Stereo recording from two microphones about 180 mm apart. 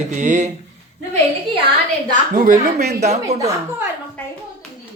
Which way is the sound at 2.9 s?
40° right (ahead or behind).